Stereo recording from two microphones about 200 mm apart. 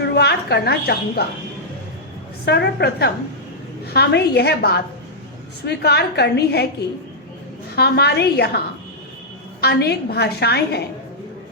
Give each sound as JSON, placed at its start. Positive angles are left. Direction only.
{"t": 0.0, "sound": "a woman's voice", "side_deg": 55}
{"t": 2.4, "sound": "a woman's voice", "side_deg": 55}
{"t": 7.8, "sound": "a woman's voice", "side_deg": 55}